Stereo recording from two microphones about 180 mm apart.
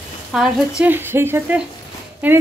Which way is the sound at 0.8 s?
10° right (ahead or behind).